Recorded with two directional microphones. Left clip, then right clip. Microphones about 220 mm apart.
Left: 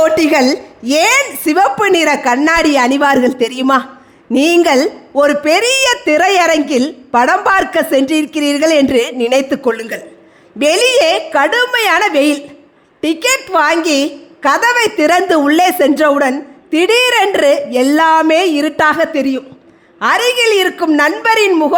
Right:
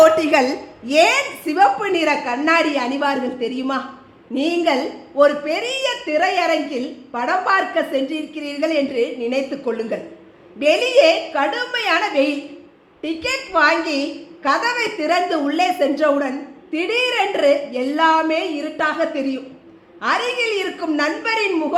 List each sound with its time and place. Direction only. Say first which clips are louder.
0.0 s speech: left 3 dB; 35° left (ahead or behind)